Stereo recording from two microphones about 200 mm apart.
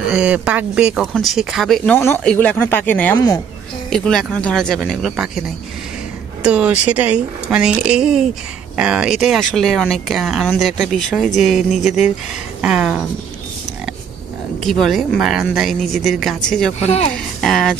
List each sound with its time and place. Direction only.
0.1 s speech: 5° right (ahead or behind); by 3.3 s 15° left (ahead or behind)
3.9 s speech: 5° left (ahead or behind)
6.4 s speech: 5° right (ahead or behind)
14.6 s speech: centre (ahead or behind)
16.8 s speech: 30° left (ahead or behind)
17.4 s speech: centre (ahead or behind)